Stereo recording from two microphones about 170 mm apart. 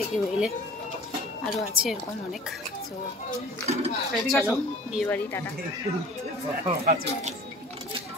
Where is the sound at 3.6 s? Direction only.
40° right (ahead or behind).